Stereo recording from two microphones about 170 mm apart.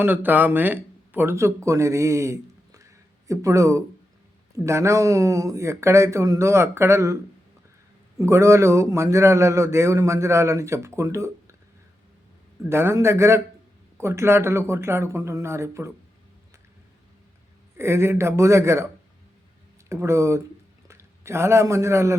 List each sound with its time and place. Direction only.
0.0 s a man's voice: 10° right (ahead or behind)
8.2 s a man's voice: 15° right (ahead or behind)
12.6 s a man's voice: 15° right (ahead or behind)
17.7 s a man's voice: 15° right (ahead or behind)
19.9 s a man's voice: 15° right (ahead or behind)